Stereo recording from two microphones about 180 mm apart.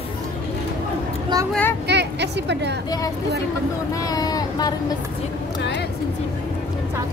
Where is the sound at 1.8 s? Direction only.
70° right (ahead or behind).